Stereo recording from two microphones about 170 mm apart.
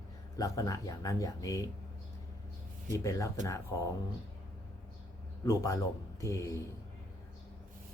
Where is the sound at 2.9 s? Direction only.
20° left (ahead or behind).